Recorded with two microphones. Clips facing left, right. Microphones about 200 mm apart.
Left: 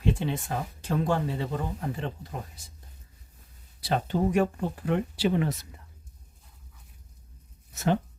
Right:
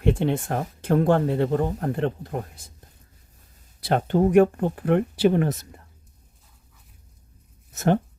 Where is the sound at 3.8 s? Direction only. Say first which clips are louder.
Right 6 dB; 55° right (ahead or behind).